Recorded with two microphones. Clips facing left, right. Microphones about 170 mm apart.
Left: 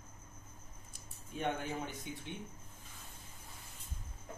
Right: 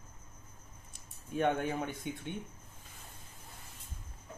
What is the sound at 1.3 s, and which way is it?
Speech, 65° right (ahead or behind).